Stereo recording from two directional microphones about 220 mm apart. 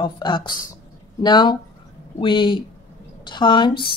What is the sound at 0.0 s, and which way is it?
A woman's voice, 20° left (ahead or behind).